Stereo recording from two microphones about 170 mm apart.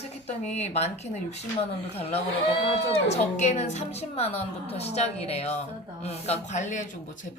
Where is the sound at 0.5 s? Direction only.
40° left (ahead or behind).